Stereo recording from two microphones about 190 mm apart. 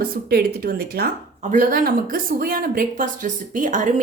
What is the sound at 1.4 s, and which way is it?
A woman's voice, 40° right (ahead or behind).